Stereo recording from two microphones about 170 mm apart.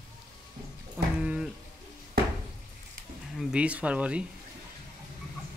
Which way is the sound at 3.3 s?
5° right (ahead or behind).